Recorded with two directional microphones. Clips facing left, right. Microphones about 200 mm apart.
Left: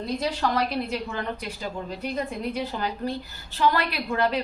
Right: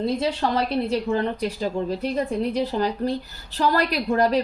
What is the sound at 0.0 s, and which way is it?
A woman's voice, 30° right (ahead or behind).